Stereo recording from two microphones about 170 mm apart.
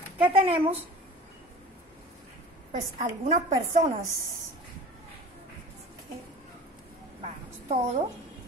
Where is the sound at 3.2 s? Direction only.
40° right (ahead or behind).